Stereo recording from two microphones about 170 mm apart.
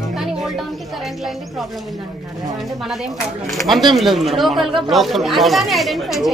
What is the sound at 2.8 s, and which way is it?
Speech, centre (ahead or behind).